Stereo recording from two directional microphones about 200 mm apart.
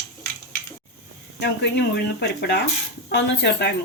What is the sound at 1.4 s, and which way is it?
Speech, 55° left (ahead or behind).